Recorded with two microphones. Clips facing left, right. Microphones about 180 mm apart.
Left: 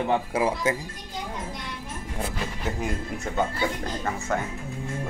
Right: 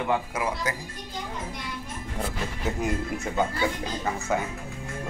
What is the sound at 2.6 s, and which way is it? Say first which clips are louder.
Speech: right 3 dB; centre (ahead or behind).